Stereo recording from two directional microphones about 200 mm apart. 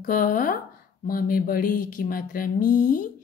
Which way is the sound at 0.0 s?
45° left (ahead or behind).